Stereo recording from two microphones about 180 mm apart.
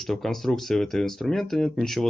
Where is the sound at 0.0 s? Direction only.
Centre (ahead or behind).